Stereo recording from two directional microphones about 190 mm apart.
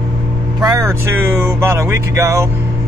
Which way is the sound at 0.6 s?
15° right (ahead or behind).